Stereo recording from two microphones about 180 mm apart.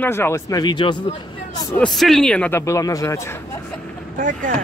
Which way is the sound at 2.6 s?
20° left (ahead or behind).